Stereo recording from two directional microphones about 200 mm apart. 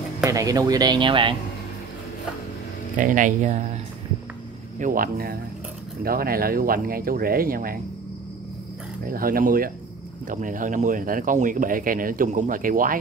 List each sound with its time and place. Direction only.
0.2 s speech: 15° right (ahead or behind)
3.0 s speech: 40° right (ahead or behind)
4.7 s speech: 40° right (ahead or behind)
9.0 s speech: 45° right (ahead or behind)